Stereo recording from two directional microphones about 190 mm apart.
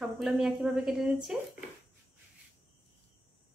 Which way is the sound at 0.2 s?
Centre (ahead or behind).